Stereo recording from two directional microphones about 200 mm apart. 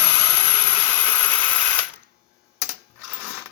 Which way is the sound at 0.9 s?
10° left (ahead or behind).